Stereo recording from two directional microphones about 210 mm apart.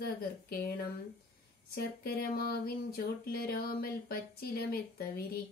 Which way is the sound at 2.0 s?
45° left (ahead or behind).